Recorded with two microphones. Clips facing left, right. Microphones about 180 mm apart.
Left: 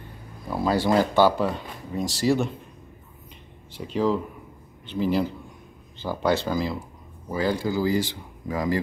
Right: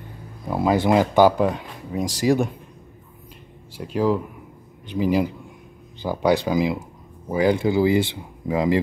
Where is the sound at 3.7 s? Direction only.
10° right (ahead or behind).